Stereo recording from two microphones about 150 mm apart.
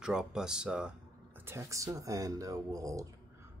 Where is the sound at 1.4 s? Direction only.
20° right (ahead or behind).